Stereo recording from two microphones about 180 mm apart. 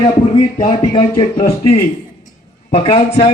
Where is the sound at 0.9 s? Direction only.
30° left (ahead or behind).